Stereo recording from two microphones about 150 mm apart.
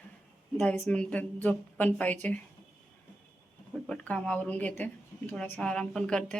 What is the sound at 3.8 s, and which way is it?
A woman's voice, 5° left (ahead or behind).